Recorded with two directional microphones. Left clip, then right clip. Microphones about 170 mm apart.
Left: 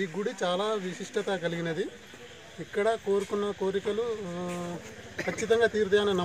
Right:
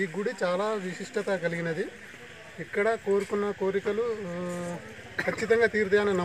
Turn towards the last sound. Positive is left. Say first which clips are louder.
# right 1 dB
turn(degrees=-15)  # may be behind; listen again after turning